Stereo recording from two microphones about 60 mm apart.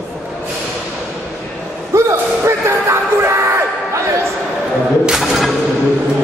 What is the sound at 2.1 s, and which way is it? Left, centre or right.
Music, right.